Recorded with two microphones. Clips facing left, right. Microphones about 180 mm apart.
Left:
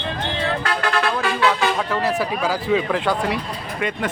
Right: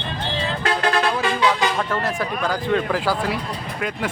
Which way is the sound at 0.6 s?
20° right (ahead or behind).